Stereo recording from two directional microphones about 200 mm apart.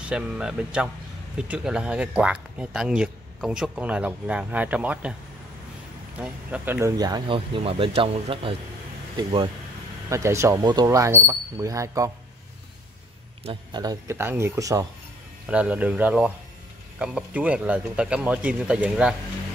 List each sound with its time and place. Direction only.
0.0 s speech: 5° right (ahead or behind)
6.1 s speech: 5° right (ahead or behind); by 9.5 s 25° right (ahead or behind)
10.0 s speech: 15° right (ahead or behind)
13.5 s speech: 20° right (ahead or behind)
15.4 s speech: 5° right (ahead or behind)